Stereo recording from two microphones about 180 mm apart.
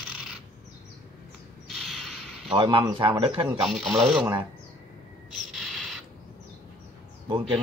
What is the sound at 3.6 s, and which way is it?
Speech, centre (ahead or behind).